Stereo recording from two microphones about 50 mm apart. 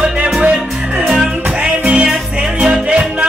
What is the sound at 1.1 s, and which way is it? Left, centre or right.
Music, centre.